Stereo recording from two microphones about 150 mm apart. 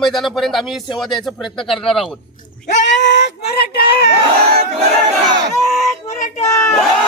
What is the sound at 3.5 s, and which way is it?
Speech, 90° left.